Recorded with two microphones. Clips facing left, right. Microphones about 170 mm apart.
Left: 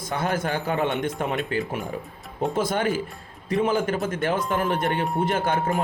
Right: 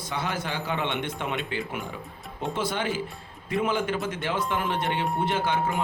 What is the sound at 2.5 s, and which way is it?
A man's voice, 45° left (ahead or behind).